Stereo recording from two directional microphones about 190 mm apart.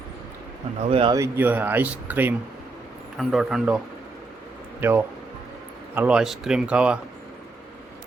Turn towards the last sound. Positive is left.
turn(degrees=-5)  # may be behind; listen again after turning